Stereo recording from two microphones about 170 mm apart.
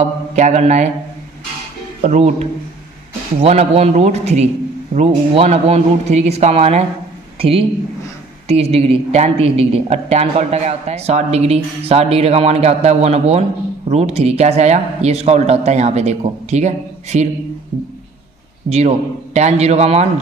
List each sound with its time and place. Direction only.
0.0 s mantra: 40° right (ahead or behind)
2.0 s a woman's voice: 45° right (ahead or behind)
18.7 s a woman's voice: 40° right (ahead or behind)